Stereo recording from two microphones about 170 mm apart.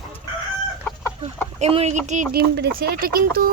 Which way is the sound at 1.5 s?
40° right (ahead or behind).